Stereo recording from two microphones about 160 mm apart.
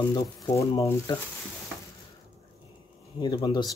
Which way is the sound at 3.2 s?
25° left (ahead or behind).